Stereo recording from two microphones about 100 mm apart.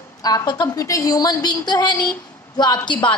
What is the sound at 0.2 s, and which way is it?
A woman's voice, 40° left (ahead or behind).